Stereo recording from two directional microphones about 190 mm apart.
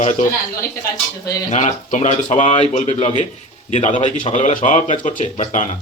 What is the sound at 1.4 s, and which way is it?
Speech, 40° left (ahead or behind).